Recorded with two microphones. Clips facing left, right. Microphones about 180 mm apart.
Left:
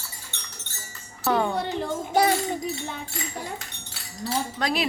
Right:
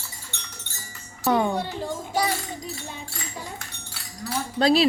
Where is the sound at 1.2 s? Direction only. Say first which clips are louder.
Right 2 dB; 15° right (ahead or behind).